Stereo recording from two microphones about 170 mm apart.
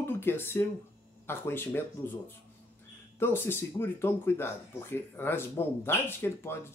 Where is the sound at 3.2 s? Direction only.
15° left (ahead or behind).